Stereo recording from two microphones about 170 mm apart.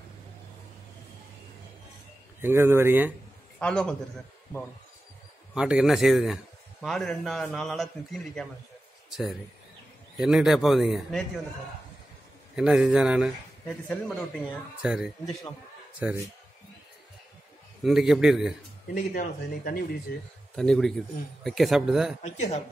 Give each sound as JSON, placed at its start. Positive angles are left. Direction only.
{"t": 2.4, "sound": "speech", "side_deg": -15}
{"t": 3.5, "sound": "a man's voice", "side_deg": 5}
{"t": 5.5, "sound": "a man's voice", "side_deg": -5}
{"t": 12.5, "sound": "a man's voice", "side_deg": -5}
{"t": 13.8, "sound": "speech", "side_deg": 5}
{"t": 14.8, "sound": "a man's voice", "side_deg": -5}
{"t": 17.8, "sound": "a man's voice", "side_deg": 0}
{"t": 19.1, "sound": "speech", "side_deg": 60}
{"t": 20.5, "sound": "a man's voice", "side_deg": 5}
{"t": 22.2, "sound": "speech", "side_deg": 40}